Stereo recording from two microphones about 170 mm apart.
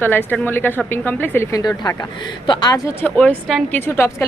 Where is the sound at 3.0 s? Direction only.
10° left (ahead or behind).